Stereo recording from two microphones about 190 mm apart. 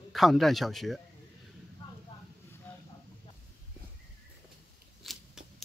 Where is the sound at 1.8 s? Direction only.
25° left (ahead or behind).